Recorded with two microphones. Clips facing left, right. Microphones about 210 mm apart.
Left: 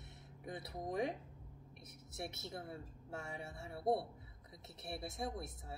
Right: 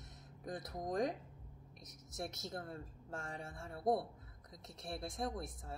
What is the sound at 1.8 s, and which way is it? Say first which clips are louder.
Speech: right 2 dB; 25° left (ahead or behind).